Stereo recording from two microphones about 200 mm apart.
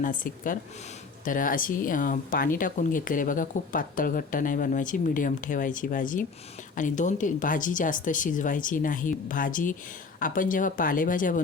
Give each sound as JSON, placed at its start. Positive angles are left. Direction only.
{"t": 0.0, "sound": "speech", "side_deg": 40}